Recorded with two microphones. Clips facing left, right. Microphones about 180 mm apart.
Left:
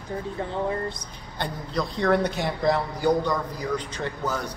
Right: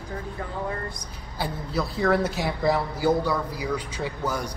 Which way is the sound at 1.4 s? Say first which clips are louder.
Even; 5° right (ahead or behind).